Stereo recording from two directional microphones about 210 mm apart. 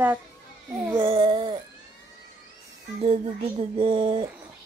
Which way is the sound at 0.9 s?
25° right (ahead or behind).